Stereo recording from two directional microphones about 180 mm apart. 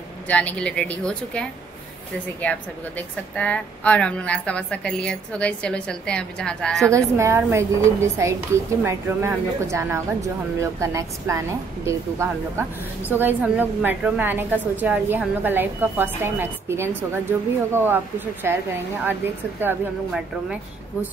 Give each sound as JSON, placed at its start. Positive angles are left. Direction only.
{"t": 0.3, "sound": "a woman's voice", "side_deg": 5}
{"t": 3.3, "sound": "a woman's voice", "side_deg": 5}
{"t": 6.9, "sound": "speech", "side_deg": -15}
{"t": 19.6, "sound": "speech", "side_deg": -5}